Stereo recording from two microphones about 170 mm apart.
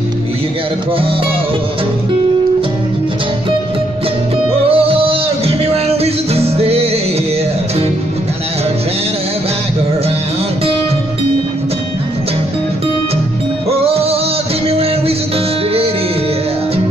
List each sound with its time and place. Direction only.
4.6 s music: 35° right (ahead or behind)
13.7 s music: 35° right (ahead or behind)